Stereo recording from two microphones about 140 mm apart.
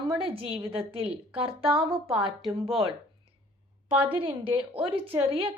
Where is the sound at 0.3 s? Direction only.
40° right (ahead or behind).